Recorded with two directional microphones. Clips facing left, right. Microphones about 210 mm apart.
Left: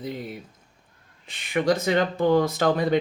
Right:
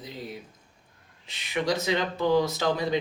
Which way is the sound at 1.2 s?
50° left (ahead or behind).